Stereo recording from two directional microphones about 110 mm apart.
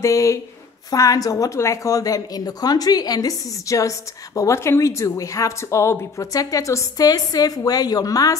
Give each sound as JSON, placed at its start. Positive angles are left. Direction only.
{"t": 0.0, "sound": "speech", "side_deg": 30}